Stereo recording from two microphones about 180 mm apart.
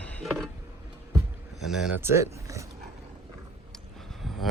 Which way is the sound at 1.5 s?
Centre (ahead or behind).